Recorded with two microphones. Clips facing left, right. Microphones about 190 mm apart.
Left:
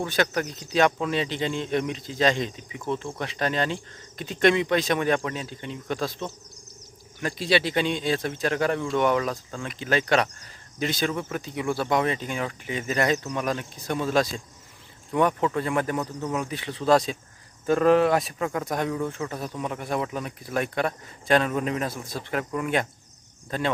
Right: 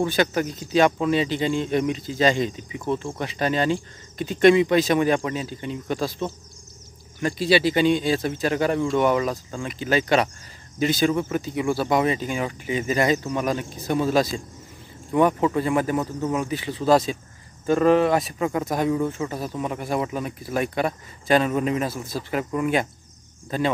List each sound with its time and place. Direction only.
0.0 s speech: 5° right (ahead or behind)